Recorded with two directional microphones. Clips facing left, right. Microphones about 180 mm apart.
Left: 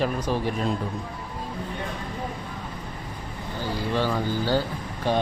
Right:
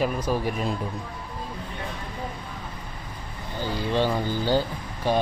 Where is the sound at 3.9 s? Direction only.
20° right (ahead or behind).